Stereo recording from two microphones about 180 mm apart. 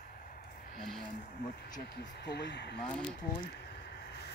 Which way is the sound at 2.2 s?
70° left (ahead or behind).